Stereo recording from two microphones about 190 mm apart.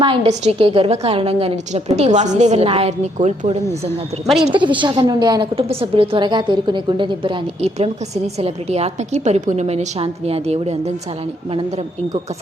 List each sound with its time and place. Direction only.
0.0 s a woman's voice: 30° right (ahead or behind)
4.4 s a woman's voice: 25° right (ahead or behind)